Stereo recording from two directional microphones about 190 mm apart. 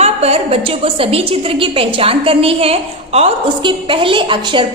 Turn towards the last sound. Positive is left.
turn(degrees=-25)  # may be behind; listen again after turning